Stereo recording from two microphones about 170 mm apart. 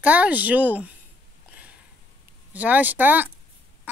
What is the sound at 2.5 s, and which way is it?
Speech, 10° right (ahead or behind).